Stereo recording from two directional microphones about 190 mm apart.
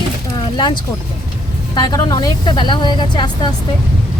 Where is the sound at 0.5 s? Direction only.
25° left (ahead or behind).